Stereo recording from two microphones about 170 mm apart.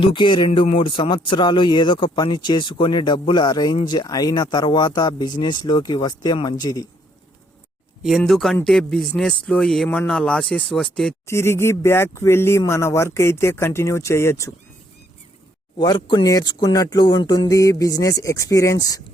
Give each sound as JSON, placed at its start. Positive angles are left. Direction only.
{"t": 0.0, "sound": "speech", "side_deg": 30}
{"t": 8.0, "sound": "speech", "side_deg": 0}
{"t": 11.3, "sound": "speech", "side_deg": 15}
{"t": 15.8, "sound": "speech", "side_deg": 25}